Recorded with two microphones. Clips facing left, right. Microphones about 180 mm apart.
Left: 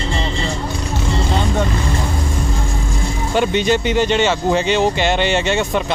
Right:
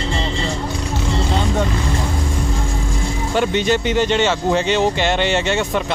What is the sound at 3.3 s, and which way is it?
Speech, 15° left (ahead or behind).